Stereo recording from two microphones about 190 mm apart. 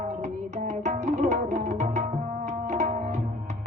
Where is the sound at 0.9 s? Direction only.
40° right (ahead or behind).